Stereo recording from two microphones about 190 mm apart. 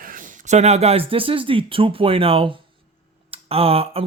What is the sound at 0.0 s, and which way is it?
Speech, 45° right (ahead or behind).